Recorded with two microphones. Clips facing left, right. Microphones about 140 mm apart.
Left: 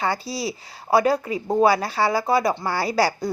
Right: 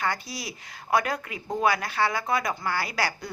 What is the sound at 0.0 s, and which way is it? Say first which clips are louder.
A woman's voice: left 6 dB; 30° left (ahead or behind).